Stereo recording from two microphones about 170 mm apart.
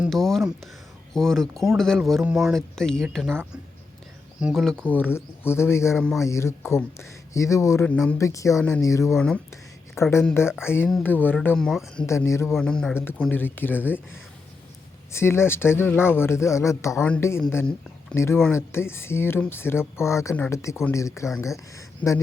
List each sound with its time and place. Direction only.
0.0 s a sound: centre (ahead or behind)
1.1 s speech: 5° left (ahead or behind)
4.4 s speech: centre (ahead or behind); by 6.0 s 15° left (ahead or behind)
6.0 s speech: centre (ahead or behind)
6.2 s speech: 15° left (ahead or behind)
9.1 s speech: 5° left (ahead or behind)
9.9 s speech: 15° left (ahead or behind)
12.0 s speech: 15° left (ahead or behind)
12.5 s speech: centre (ahead or behind)
15.1 s speech: 15° left (ahead or behind)